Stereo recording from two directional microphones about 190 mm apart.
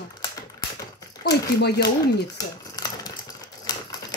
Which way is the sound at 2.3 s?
20° left (ahead or behind).